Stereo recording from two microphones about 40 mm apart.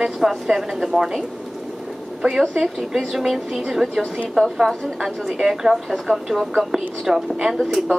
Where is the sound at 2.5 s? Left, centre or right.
Centre.